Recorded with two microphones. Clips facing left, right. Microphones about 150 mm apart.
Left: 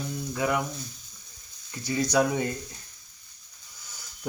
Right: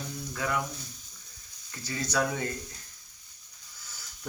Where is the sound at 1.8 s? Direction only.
15° left (ahead or behind).